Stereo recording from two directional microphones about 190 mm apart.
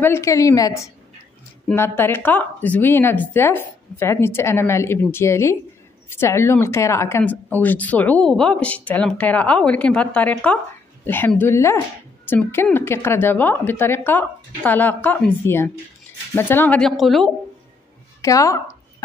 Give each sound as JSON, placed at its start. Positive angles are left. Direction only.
{"t": 0.0, "sound": "a woman's voice", "side_deg": 15}
{"t": 18.2, "sound": "speech", "side_deg": 15}